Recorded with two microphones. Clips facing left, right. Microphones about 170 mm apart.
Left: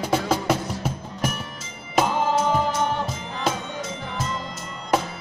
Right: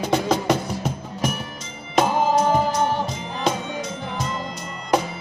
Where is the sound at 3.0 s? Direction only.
5° left (ahead or behind).